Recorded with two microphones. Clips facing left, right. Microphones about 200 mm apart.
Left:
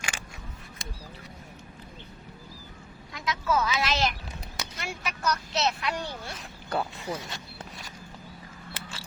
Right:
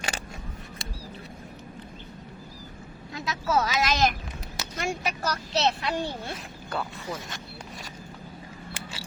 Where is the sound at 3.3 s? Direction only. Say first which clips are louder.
Right 1 dB; 40° right (ahead or behind).